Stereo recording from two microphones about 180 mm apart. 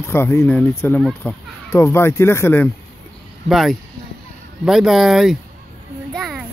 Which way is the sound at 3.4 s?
Centre (ahead or behind).